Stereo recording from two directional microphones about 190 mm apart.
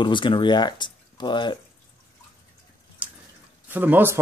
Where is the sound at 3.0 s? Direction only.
5° right (ahead or behind).